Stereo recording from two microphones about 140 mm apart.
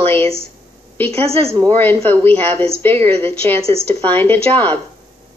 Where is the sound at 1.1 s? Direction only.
45° right (ahead or behind).